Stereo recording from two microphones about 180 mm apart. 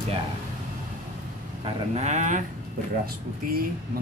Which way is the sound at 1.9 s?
40° right (ahead or behind).